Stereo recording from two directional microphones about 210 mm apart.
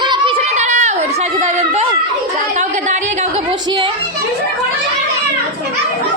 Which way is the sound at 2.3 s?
35° right (ahead or behind).